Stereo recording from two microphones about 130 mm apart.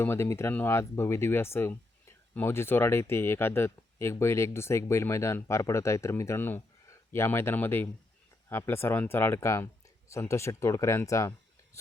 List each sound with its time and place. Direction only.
0.0 s speech: 20° left (ahead or behind)